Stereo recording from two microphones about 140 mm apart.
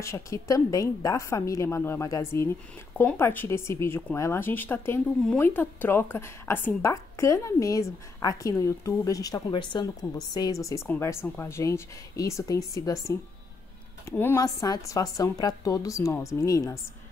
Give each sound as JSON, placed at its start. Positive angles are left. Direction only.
{"t": 0.0, "sound": "a woman's voice", "side_deg": 20}